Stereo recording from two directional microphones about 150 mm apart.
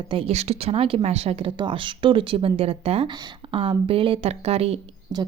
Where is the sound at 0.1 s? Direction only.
40° right (ahead or behind).